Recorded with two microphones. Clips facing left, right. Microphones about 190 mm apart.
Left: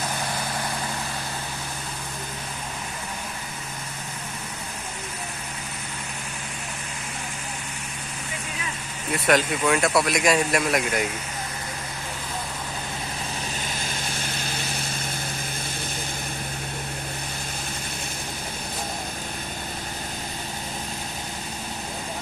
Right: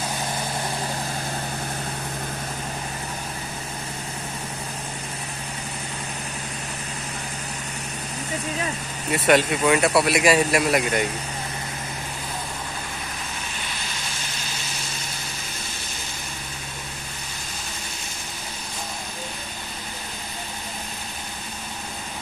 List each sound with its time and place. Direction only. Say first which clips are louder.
9.1 s speech: right 3 dB; centre (ahead or behind)